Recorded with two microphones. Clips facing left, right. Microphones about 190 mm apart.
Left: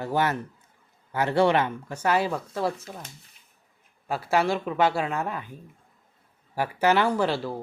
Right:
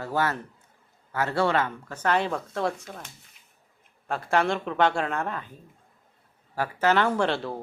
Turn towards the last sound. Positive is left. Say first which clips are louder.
# left 1 dB
turn(degrees=0)  # may be behind; listen again after turning